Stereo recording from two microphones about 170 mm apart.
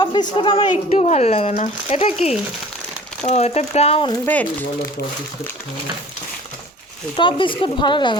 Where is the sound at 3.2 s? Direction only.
40° left (ahead or behind).